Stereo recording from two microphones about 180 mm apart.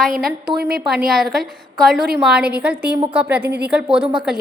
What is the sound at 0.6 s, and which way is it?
Speech, 60° right (ahead or behind).